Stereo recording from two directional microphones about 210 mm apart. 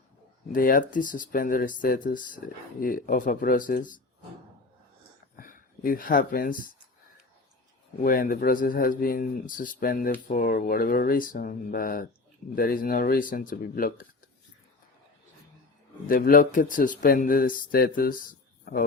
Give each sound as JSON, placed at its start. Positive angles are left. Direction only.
{"t": 0.5, "sound": "speech", "side_deg": 40}
{"t": 5.4, "sound": "speech", "side_deg": 40}
{"t": 8.0, "sound": "speech", "side_deg": 40}
{"t": 16.0, "sound": "speech", "side_deg": 40}